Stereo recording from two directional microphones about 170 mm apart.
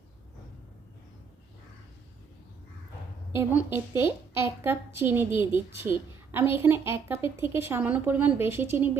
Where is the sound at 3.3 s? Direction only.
10° right (ahead or behind).